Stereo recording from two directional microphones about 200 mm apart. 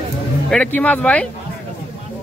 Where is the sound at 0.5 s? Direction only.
5° left (ahead or behind).